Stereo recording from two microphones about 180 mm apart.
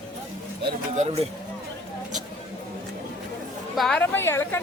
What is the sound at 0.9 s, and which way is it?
Speech, 35° right (ahead or behind).